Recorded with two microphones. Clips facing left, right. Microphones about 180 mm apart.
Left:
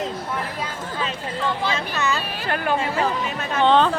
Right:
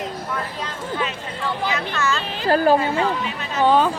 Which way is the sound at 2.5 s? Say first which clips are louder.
Right 8 dB; 35° right (ahead or behind).